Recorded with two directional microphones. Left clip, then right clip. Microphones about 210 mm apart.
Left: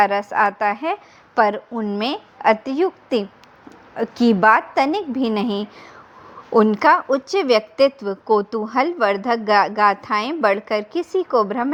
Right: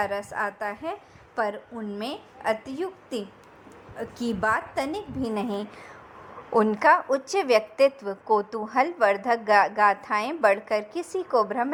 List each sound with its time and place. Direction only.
0.0 s a woman's voice: 30° left (ahead or behind)
6.6 s a woman's voice: 55° left (ahead or behind)
7.9 s a woman's voice: 30° left (ahead or behind)
8.3 s a woman's voice: 55° left (ahead or behind)